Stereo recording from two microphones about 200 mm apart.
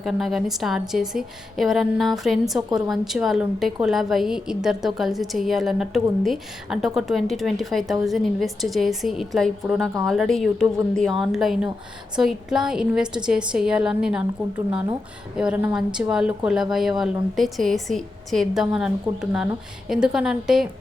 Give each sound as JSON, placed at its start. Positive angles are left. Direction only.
{"t": 0.0, "sound": "a woman's voice", "side_deg": 0}
{"t": 14.7, "sound": "speech", "side_deg": -25}
{"t": 15.4, "sound": "a woman's voice", "side_deg": -5}